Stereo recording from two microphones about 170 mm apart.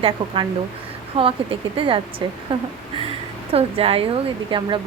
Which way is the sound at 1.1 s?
35° right (ahead or behind).